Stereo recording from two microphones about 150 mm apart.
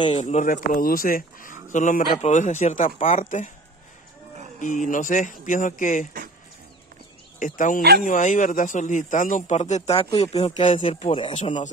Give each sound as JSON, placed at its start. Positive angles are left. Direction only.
{"t": 0.0, "sound": "speech", "side_deg": 45}
{"t": 4.6, "sound": "speech", "side_deg": 60}
{"t": 7.3, "sound": "speech", "side_deg": 60}